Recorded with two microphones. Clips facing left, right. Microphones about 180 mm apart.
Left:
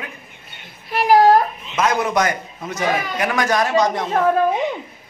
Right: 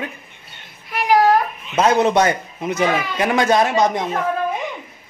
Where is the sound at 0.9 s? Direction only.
35° left (ahead or behind).